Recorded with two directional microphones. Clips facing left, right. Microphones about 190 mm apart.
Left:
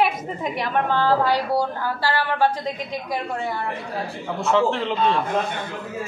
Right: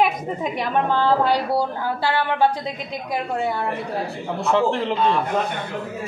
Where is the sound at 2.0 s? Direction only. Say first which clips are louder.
Right 2 dB; 20° right (ahead or behind).